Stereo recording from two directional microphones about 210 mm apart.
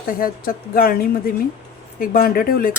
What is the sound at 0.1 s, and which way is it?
Speech, 45° left (ahead or behind).